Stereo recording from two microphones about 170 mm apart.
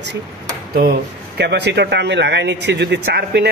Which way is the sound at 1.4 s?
85° right.